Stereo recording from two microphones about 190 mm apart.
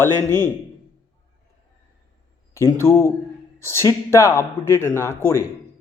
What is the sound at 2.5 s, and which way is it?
Speech, 15° left (ahead or behind).